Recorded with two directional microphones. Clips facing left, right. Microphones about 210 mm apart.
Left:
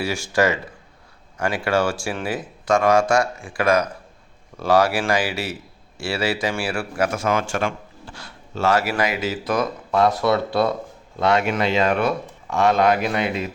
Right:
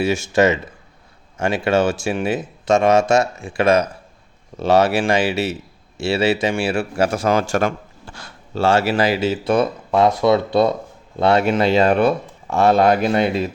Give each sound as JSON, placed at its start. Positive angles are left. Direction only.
{"t": 0.0, "sound": "speech", "side_deg": -20}
{"t": 8.5, "sound": "speech", "side_deg": -30}
{"t": 11.2, "sound": "speech", "side_deg": -35}